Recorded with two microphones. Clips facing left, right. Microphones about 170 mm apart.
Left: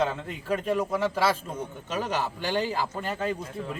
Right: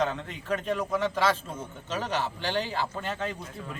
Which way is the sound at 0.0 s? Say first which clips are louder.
Left 1 dB; 5° left (ahead or behind).